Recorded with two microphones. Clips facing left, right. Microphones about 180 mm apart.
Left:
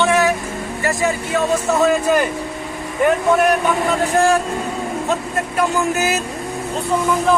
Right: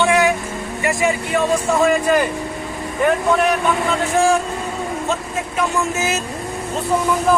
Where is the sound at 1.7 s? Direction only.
Centre (ahead or behind).